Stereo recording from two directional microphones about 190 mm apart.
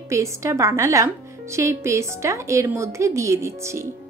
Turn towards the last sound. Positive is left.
turn(degrees=-15)  # may be behind; listen again after turning